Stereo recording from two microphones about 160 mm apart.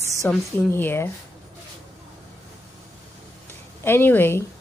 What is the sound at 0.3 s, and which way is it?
Speech, 10° left (ahead or behind).